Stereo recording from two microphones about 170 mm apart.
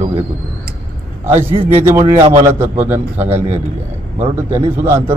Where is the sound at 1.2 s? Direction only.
15° right (ahead or behind).